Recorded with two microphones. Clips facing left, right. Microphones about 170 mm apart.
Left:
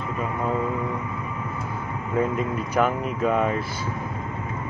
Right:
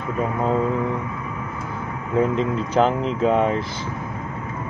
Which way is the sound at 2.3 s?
25° right (ahead or behind).